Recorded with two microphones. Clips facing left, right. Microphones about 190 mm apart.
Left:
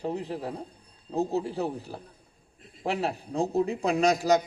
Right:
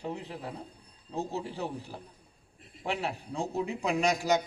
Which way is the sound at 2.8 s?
35° left (ahead or behind).